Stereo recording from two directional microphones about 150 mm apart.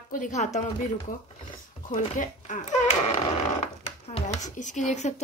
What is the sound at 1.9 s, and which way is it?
Speech, 65° left (ahead or behind).